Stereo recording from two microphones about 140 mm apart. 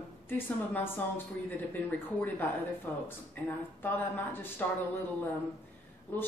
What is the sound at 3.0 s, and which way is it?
Speech, 15° left (ahead or behind).